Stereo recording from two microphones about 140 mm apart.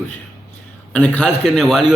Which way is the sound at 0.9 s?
10° left (ahead or behind).